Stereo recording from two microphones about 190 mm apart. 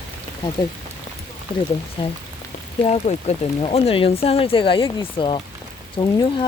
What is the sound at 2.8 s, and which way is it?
Speech, 35° left (ahead or behind).